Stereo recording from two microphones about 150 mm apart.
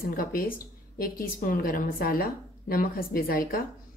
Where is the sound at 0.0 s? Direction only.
75° left (ahead or behind).